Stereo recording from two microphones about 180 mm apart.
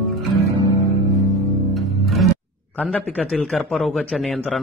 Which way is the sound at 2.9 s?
5° left (ahead or behind).